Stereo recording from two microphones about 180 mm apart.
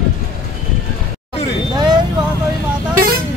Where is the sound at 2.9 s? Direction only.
50° right (ahead or behind).